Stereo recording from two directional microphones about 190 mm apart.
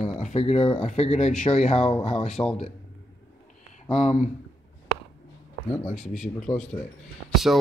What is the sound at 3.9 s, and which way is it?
Speech, 35° left (ahead or behind).